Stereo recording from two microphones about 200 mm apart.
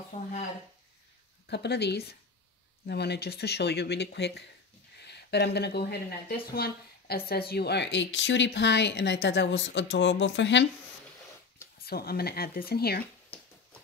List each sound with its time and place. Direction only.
0.1 s speech: 35° left (ahead or behind)
1.5 s a woman's voice: 55° left (ahead or behind)
11.8 s speech: 50° left (ahead or behind)